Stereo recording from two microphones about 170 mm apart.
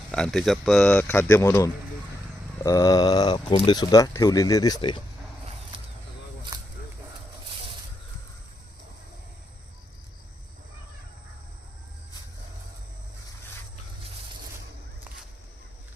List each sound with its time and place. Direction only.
0.1 s speech: 5° left (ahead or behind); by 4.9 s 25° left (ahead or behind)